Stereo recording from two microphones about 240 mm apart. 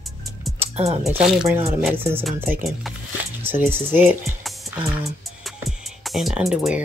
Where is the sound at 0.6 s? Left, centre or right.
Right.